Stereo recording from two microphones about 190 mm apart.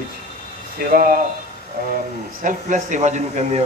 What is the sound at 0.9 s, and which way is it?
Speech, 50° right (ahead or behind).